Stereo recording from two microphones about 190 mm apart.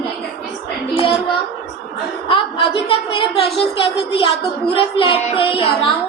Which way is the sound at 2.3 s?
25° left (ahead or behind).